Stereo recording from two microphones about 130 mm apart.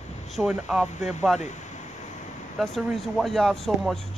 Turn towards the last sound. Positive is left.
turn(degrees=0)  # may be behind; listen again after turning